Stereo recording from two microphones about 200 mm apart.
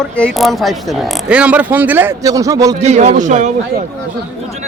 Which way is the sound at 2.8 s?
35° right (ahead or behind).